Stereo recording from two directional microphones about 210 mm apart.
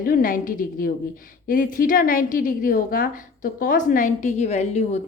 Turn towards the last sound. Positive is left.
turn(degrees=30)  # may be behind; listen again after turning